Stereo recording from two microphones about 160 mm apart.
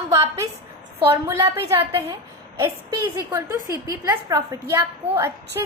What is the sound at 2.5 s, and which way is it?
A woman's voice, 20° right (ahead or behind).